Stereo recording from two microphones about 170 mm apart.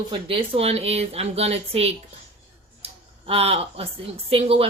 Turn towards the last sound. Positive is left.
turn(degrees=-35)  # may be behind; listen again after turning